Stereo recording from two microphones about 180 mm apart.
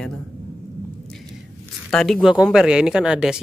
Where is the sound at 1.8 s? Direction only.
5° left (ahead or behind).